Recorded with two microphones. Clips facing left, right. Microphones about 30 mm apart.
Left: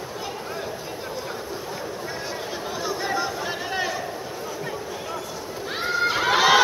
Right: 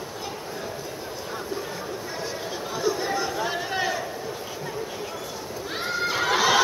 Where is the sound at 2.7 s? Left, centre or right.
Centre.